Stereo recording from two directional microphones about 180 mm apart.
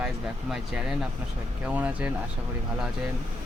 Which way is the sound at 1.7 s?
10° right (ahead or behind).